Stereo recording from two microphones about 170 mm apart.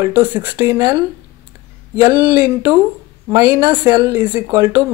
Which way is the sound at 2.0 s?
20° right (ahead or behind).